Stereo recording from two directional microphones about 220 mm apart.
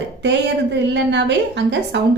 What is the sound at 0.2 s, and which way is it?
A woman's voice, 50° right (ahead or behind).